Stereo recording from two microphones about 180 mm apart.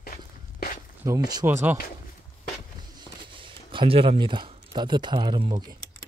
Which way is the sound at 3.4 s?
30° right (ahead or behind).